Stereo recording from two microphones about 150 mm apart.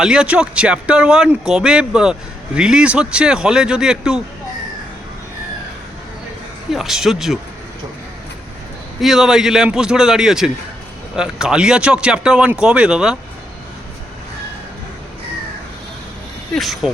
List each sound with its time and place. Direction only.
0.0 s speech: 5° right (ahead or behind)
6.7 s speech: centre (ahead or behind)
9.0 s speech: 5° right (ahead or behind)
16.6 s speech: centre (ahead or behind)